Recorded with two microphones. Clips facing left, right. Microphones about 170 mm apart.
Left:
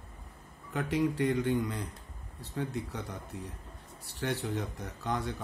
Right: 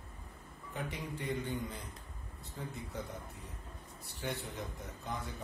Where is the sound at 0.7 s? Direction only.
75° left (ahead or behind).